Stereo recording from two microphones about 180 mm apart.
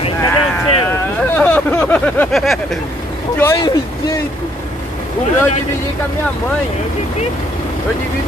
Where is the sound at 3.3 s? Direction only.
15° left (ahead or behind).